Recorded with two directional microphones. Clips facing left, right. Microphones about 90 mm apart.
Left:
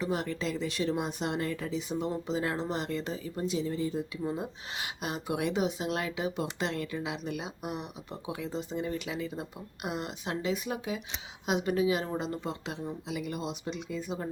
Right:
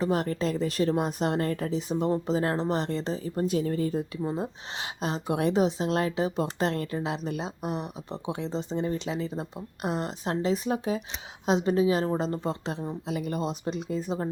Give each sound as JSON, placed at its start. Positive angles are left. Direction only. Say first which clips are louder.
{"t": 0.0, "sound": "speech", "louder": "right 5 dB", "side_deg": -40}
{"t": 4.2, "sound": "speech", "louder": "right 3 dB", "side_deg": -30}